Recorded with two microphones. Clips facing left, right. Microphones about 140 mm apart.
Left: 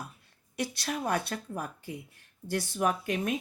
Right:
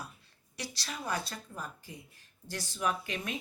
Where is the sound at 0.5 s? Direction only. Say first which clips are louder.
Left 8 dB; 55° left (ahead or behind).